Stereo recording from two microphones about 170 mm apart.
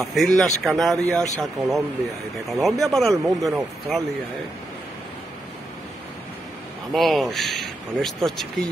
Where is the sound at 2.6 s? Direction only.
Centre (ahead or behind).